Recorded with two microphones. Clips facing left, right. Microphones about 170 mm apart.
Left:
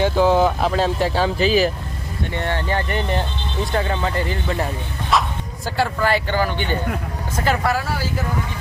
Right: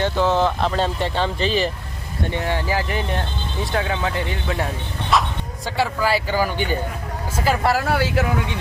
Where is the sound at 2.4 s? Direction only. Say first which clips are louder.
Left 1 dB; 5° right (ahead or behind).